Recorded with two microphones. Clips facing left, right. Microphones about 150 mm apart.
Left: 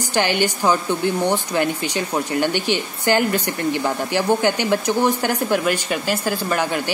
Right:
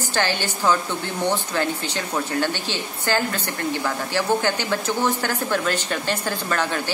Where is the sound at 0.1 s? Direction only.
15° left (ahead or behind).